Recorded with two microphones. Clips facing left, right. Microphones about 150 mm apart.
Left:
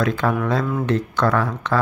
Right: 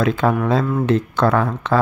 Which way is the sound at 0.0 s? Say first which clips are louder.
Right 3 dB; 25° right (ahead or behind).